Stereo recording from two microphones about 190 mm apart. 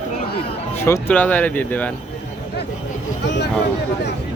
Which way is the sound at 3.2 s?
65° left (ahead or behind).